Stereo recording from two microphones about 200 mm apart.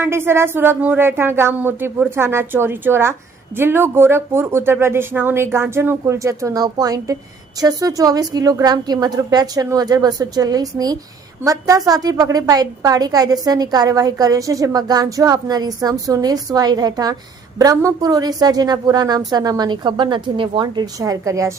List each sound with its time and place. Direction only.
0.0 s a woman's voice: 10° right (ahead or behind)